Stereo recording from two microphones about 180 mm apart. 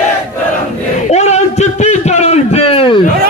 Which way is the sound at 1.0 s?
40° left (ahead or behind).